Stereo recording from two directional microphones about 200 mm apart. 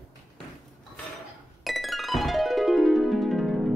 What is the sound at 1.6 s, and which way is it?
Music, centre (ahead or behind).